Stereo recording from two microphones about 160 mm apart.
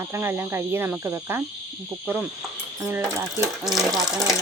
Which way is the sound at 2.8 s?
15° right (ahead or behind).